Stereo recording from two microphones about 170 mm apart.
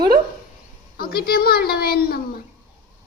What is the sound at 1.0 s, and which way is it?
A woman's voice, 65° left (ahead or behind).